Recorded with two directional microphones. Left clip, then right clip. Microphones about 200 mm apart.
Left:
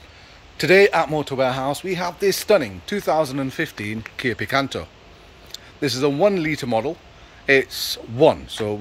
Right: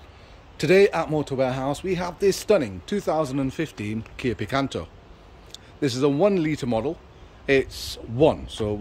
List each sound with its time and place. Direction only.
0.6 s speech: centre (ahead or behind)